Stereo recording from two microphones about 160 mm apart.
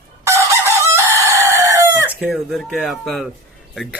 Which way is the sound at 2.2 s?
Centre (ahead or behind).